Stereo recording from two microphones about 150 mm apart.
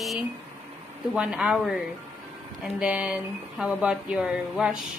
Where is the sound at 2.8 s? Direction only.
5° right (ahead or behind).